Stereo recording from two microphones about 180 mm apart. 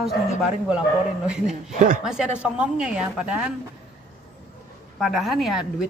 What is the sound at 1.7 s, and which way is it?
Speech, 45° right (ahead or behind).